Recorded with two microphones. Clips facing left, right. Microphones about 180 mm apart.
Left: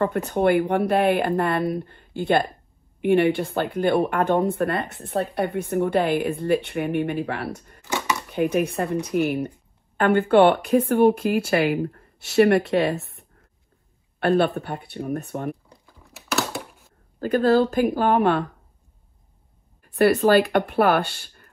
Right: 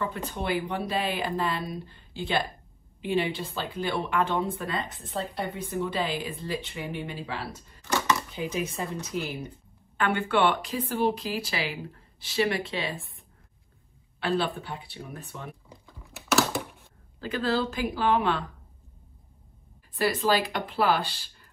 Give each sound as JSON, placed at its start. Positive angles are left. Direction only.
{"t": 0.0, "sound": "speech", "side_deg": 60}
{"t": 7.8, "sound": "chopping", "side_deg": 15}
{"t": 8.3, "sound": "speech", "side_deg": 60}
{"t": 14.2, "sound": "speech", "side_deg": 60}
{"t": 15.7, "sound": "a sound", "side_deg": 0}
{"t": 17.2, "sound": "speech", "side_deg": 55}
{"t": 20.0, "sound": "speech", "side_deg": 65}